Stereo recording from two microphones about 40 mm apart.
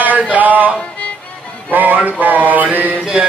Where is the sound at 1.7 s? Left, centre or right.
Right.